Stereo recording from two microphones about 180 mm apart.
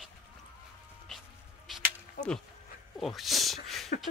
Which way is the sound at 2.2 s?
45° left (ahead or behind).